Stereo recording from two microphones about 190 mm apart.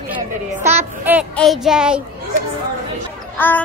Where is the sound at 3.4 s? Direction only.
10° left (ahead or behind).